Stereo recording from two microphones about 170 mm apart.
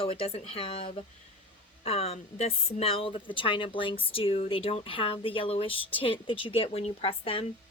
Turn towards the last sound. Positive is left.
turn(degrees=35)  # may be behind; listen again after turning